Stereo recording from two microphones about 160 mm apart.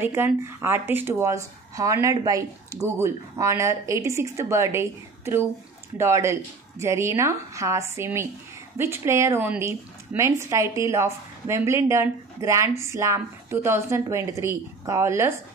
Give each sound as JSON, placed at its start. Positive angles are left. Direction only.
{"t": 0.0, "sound": "speech", "side_deg": -15}